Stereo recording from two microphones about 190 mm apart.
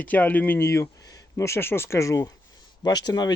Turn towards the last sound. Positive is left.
turn(degrees=20)  # may be behind; listen again after turning